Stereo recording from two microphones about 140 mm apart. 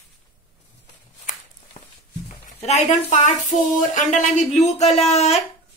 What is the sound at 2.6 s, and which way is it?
A woman's voice, 55° left (ahead or behind).